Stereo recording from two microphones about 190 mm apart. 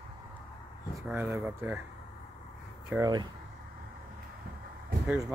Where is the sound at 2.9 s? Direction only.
20° right (ahead or behind).